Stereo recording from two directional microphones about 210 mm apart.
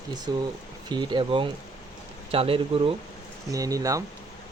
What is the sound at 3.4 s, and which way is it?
Speech, 15° right (ahead or behind).